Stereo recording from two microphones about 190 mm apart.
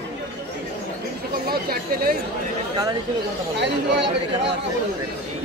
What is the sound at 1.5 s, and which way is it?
Chatter, 50° right (ahead or behind).